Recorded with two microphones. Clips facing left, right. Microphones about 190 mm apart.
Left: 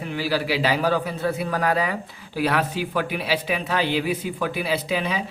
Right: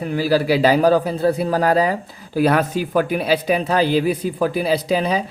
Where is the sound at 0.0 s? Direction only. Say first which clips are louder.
Right 7 dB; 45° right (ahead or behind).